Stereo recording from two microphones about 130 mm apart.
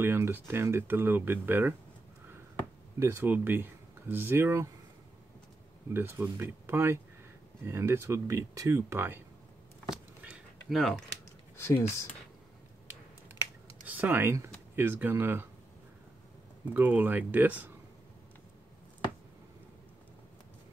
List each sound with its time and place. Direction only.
0.0 s speech: 15° right (ahead or behind)
3.0 s speech: 15° right (ahead or behind)
5.9 s speech: 15° right (ahead or behind)
9.8 s a sound: 5° right (ahead or behind)
11.5 s speech: 20° left (ahead or behind)
13.9 s speech: 15° right (ahead or behind)
16.7 s speech: 15° right (ahead or behind)